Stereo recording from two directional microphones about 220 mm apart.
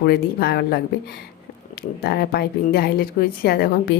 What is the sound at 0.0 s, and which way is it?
Speech, 45° left (ahead or behind).